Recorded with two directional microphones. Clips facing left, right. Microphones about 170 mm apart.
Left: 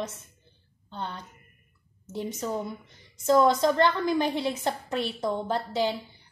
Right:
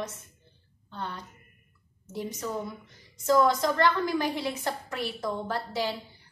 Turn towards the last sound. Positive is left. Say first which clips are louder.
# left 4 dB
turn(degrees=25)  # may be behind; listen again after turning